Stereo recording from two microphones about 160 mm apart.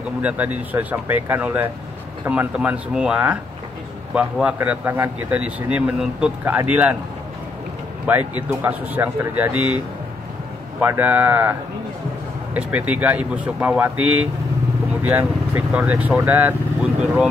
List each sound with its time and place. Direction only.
0.2 s a man's voice: 10° right (ahead or behind)
8.1 s a man's voice: 10° right (ahead or behind)
10.8 s a man's voice: 10° right (ahead or behind)
12.5 s a man's voice: 10° right (ahead or behind)